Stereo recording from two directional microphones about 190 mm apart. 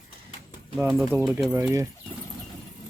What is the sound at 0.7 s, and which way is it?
Speech, 5° right (ahead or behind).